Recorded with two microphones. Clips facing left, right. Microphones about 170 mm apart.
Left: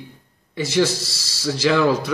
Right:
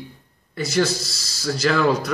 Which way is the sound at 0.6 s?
30° left (ahead or behind).